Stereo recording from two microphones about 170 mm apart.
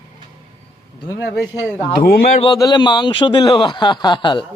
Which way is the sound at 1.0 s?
20° left (ahead or behind).